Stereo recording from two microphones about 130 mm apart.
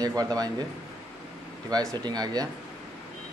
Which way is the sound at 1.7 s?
30° right (ahead or behind).